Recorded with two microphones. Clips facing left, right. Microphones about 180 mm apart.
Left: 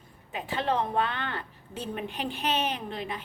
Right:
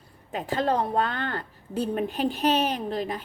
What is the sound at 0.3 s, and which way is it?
A woman's voice, 40° right (ahead or behind).